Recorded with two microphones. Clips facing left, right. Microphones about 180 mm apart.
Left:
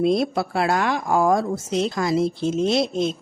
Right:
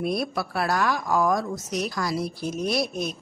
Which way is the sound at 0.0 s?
25° left (ahead or behind).